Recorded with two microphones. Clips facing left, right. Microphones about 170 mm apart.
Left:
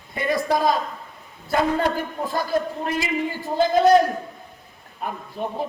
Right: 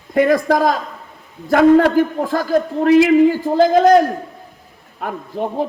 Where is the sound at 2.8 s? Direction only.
75° right (ahead or behind).